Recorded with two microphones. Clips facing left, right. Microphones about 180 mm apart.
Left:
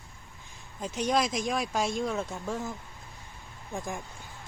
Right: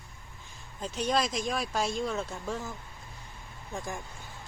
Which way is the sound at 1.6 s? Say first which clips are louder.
Left 1 dB; centre (ahead or behind).